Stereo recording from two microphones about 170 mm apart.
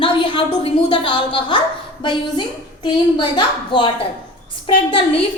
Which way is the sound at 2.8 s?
25° left (ahead or behind).